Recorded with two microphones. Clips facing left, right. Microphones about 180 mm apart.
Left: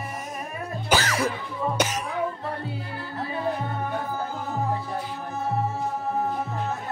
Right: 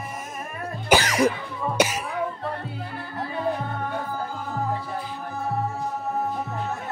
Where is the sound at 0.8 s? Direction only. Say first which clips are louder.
Right 4 dB; 15° right (ahead or behind).